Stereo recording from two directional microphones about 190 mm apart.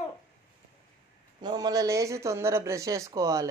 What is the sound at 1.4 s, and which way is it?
Speech, 20° right (ahead or behind).